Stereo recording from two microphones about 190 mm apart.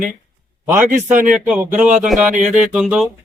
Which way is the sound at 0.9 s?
45° right (ahead or behind).